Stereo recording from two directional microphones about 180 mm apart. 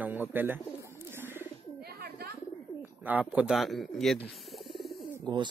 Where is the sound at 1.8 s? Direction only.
60° right (ahead or behind).